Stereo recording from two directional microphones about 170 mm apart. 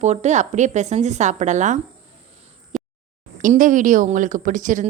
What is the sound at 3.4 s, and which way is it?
A woman's voice, 50° right (ahead or behind).